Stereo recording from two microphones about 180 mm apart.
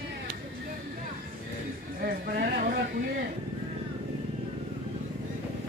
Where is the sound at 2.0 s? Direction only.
55° right (ahead or behind).